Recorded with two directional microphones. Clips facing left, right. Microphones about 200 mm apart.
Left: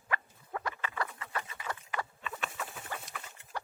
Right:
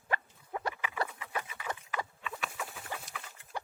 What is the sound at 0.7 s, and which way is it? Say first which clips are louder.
Rodents: right 1 dB; 10° right (ahead or behind).